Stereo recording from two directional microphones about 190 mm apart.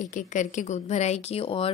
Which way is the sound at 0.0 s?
40° left (ahead or behind).